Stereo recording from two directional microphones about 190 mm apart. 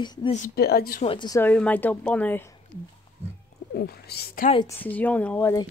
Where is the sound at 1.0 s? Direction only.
25° left (ahead or behind).